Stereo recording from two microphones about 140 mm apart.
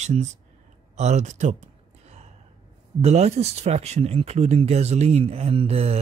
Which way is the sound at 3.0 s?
50° right (ahead or behind).